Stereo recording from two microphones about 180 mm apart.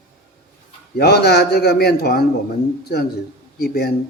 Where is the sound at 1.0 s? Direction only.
65° left (ahead or behind).